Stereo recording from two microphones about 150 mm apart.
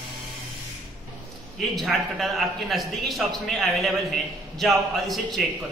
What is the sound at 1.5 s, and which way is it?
A man's voice, centre (ahead or behind).